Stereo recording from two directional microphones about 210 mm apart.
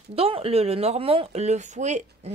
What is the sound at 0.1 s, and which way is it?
Speech, 25° right (ahead or behind).